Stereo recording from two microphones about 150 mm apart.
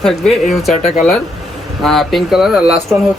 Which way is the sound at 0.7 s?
50° left (ahead or behind).